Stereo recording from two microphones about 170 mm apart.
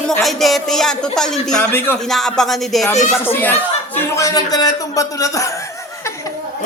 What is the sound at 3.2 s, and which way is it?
Speech, 15° left (ahead or behind).